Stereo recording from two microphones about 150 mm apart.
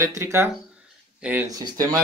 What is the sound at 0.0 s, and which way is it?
Speech, 20° right (ahead or behind).